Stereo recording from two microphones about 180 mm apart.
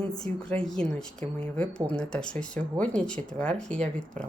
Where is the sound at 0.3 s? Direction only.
35° right (ahead or behind).